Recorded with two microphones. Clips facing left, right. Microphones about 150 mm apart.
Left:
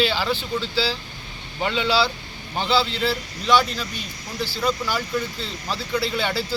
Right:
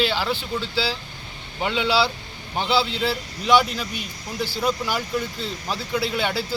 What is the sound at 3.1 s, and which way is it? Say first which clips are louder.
Speech: right 2 dB; 15° right (ahead or behind).